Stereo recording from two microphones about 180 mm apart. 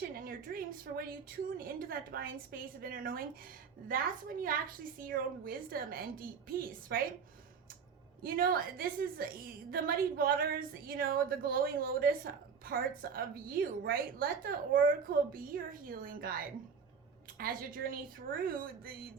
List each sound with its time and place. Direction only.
0.2 s a woman's voice: 50° right (ahead or behind)
8.2 s a woman's voice: 55° right (ahead or behind)